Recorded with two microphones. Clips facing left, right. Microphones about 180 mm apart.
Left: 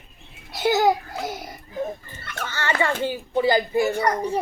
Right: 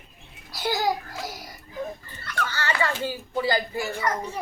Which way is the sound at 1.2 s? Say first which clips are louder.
Left 6 dB; 25° left (ahead or behind).